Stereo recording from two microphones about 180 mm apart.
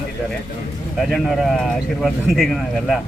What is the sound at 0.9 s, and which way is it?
A man's voice, centre (ahead or behind).